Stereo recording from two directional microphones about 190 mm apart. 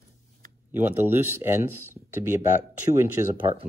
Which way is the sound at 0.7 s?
10° right (ahead or behind).